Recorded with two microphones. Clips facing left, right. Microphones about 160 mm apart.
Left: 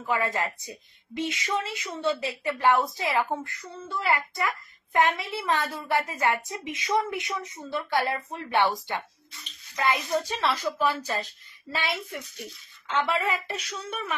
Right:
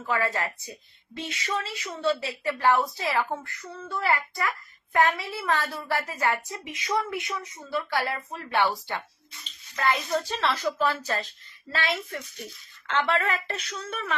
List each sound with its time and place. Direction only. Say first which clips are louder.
0.0 s a woman's voice: even; 20° left (ahead or behind)
4.9 s a woman's voice: even; 20° left (ahead or behind)